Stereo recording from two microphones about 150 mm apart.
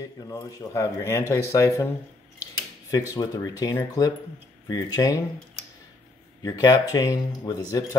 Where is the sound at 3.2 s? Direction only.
25° left (ahead or behind).